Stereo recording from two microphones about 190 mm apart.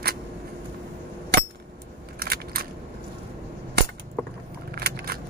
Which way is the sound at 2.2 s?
55° right (ahead or behind).